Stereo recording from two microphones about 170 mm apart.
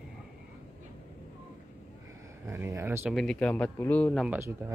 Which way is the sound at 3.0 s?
Centre (ahead or behind).